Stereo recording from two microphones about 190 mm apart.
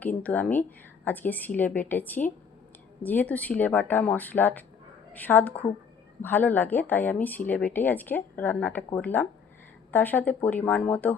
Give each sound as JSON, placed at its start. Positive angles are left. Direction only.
{"t": 0.0, "sound": "speech", "side_deg": 10}